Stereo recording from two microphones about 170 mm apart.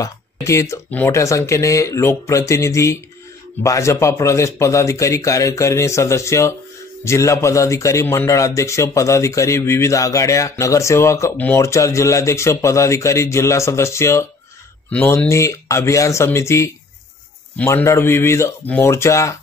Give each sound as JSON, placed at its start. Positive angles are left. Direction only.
{"t": 0.0, "sound": "speech", "side_deg": 15}